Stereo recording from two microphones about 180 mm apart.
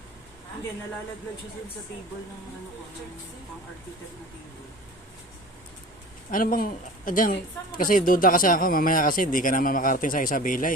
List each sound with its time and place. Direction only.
6.3 s speech: 50° left (ahead or behind)